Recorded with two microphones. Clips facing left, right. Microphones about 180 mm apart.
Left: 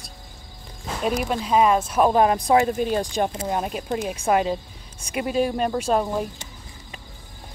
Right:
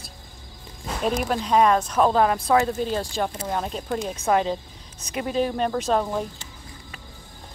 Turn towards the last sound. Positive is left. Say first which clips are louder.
# left 1 dB
turn(degrees=10)  # may be behind; listen again after turning